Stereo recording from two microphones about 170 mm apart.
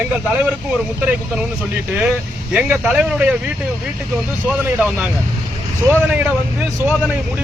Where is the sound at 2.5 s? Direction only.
5° right (ahead or behind).